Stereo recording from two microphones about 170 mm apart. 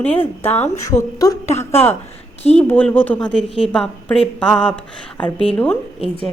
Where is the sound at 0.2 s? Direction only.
10° left (ahead or behind).